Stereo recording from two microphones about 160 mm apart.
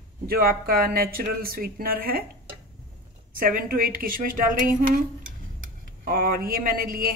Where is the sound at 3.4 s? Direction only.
65° right (ahead or behind).